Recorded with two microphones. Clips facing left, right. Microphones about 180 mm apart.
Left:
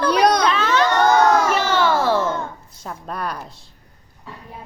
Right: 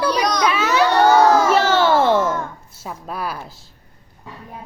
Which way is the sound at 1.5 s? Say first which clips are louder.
Right 3 dB; 30° right (ahead or behind).